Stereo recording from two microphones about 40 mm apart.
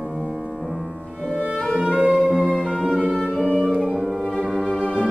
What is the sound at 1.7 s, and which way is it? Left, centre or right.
Music, right.